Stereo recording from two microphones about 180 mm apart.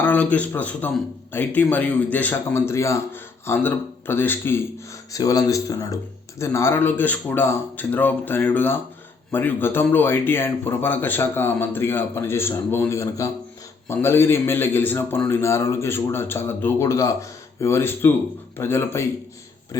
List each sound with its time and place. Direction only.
0.0 s a man's voice: 10° left (ahead or behind)